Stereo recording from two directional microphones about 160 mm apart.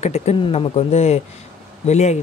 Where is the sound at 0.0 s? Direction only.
40° left (ahead or behind).